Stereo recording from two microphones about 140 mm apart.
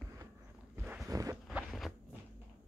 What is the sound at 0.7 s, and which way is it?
Boat, 15° right (ahead or behind).